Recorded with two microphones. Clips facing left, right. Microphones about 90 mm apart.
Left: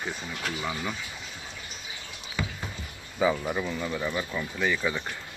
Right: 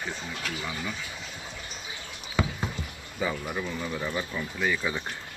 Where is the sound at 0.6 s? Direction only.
15° left (ahead or behind).